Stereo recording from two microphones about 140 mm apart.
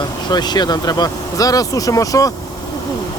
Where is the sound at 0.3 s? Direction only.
30° left (ahead or behind).